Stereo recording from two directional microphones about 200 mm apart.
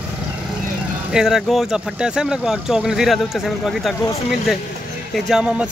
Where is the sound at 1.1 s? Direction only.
5° right (ahead or behind).